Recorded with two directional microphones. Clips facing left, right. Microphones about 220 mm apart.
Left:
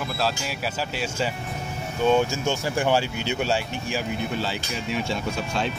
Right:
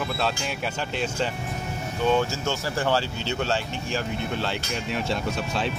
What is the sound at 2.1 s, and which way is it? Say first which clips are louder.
Speech: left 2 dB; 15° left (ahead or behind).